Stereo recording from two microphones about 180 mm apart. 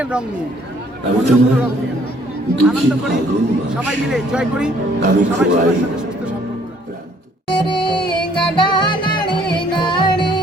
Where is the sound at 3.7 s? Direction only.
5° right (ahead or behind).